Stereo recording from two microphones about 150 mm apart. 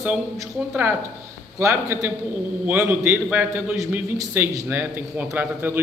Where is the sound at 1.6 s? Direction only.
15° right (ahead or behind).